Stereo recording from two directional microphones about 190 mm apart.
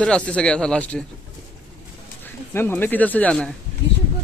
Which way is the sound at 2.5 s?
10° left (ahead or behind).